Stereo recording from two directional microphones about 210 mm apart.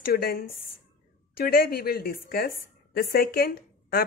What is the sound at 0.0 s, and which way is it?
A woman's voice, 45° left (ahead or behind).